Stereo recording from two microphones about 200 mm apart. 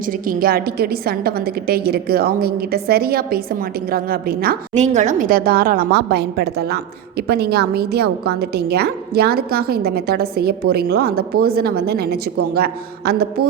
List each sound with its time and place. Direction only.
0.3 s a woman's voice: 45° right (ahead or behind)